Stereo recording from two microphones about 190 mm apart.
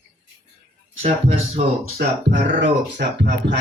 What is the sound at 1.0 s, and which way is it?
Speech, 45° right (ahead or behind).